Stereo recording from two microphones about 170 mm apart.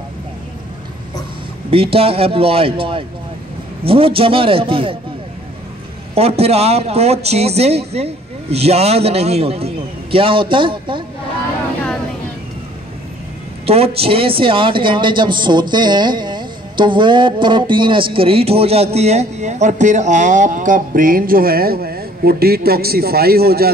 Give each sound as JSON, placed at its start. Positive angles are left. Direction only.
{"t": 1.7, "sound": "speech", "side_deg": -35}
{"t": 6.1, "sound": "speech", "side_deg": -35}
{"t": 13.7, "sound": "a man's voice", "side_deg": -35}